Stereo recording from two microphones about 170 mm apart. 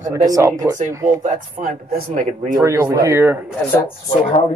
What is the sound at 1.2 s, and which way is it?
Speech, 55° right (ahead or behind).